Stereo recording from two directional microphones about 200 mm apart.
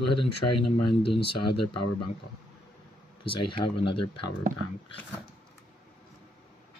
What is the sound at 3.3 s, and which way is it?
Speech, 25° left (ahead or behind).